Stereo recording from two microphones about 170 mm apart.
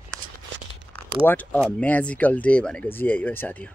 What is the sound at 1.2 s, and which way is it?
Speech, 10° left (ahead or behind).